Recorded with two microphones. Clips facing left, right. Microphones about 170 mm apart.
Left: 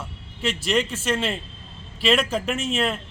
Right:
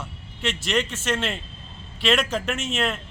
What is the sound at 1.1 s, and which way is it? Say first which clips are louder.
Speech: left 2 dB; centre (ahead or behind).